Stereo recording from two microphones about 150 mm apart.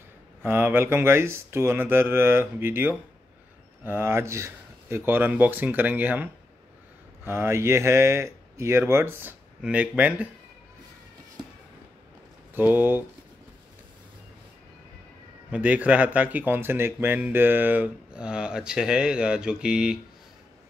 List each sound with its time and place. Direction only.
0.4 s speech: 15° right (ahead or behind)
7.2 s speech: 15° right (ahead or behind)
12.5 s speech: 15° right (ahead or behind)
15.5 s speech: 10° right (ahead or behind)